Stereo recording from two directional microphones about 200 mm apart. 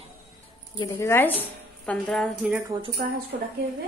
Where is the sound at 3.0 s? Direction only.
45° right (ahead or behind).